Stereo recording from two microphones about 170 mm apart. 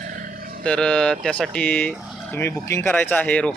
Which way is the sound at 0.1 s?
55° right (ahead or behind).